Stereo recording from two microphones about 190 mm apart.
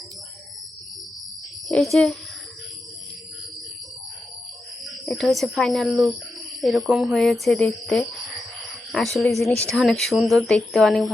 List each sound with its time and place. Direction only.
1.6 s a child's voice: centre (ahead or behind)
5.0 s speech: centre (ahead or behind)
9.1 s speech: centre (ahead or behind)